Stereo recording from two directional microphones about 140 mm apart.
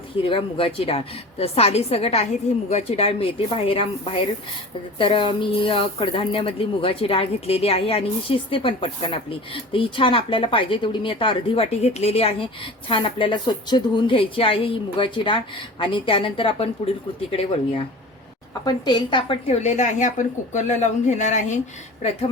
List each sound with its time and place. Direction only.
0.2 s a woman's voice: 40° left (ahead or behind)
18.6 s speech: 30° left (ahead or behind)
19.5 s a woman's voice: 55° left (ahead or behind)